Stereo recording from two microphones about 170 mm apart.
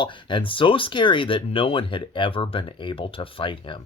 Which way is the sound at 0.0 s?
30° left (ahead or behind).